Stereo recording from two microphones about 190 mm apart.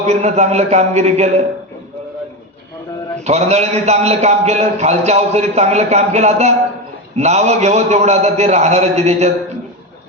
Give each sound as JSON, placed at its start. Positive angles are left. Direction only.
{"t": 0.1, "sound": "a man's voice", "side_deg": -35}
{"t": 3.2, "sound": "a man's voice", "side_deg": -35}